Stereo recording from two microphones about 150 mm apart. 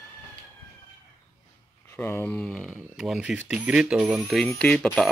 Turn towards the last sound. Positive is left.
turn(degrees=0)  # may be behind; listen again after turning